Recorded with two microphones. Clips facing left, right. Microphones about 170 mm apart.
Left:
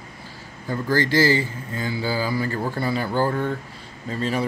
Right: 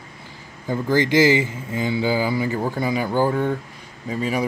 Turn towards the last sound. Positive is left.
turn(degrees=-10)  # may be behind; listen again after turning